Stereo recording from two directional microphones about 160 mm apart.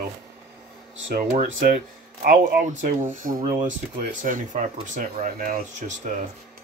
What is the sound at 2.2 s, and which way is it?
Speech, 60° right (ahead or behind).